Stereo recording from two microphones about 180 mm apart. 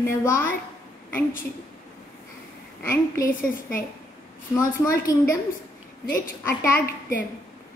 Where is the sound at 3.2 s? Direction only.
50° left (ahead or behind).